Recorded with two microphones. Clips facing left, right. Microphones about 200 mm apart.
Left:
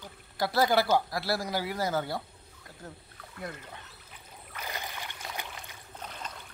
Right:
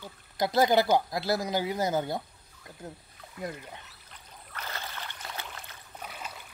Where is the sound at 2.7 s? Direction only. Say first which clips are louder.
Right 3 dB; 20° right (ahead or behind).